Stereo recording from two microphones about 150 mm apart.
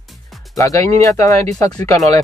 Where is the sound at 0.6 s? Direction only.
20° left (ahead or behind).